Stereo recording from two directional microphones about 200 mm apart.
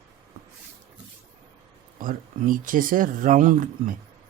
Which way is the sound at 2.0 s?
45° right (ahead or behind).